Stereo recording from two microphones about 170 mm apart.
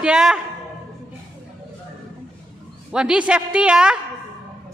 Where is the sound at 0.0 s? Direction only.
5° right (ahead or behind).